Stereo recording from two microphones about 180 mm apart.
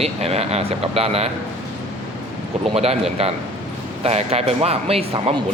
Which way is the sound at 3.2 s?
35° right (ahead or behind).